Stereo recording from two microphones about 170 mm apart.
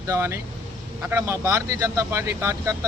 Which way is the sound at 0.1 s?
15° right (ahead or behind).